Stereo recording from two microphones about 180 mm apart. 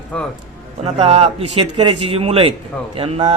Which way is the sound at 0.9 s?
35° right (ahead or behind).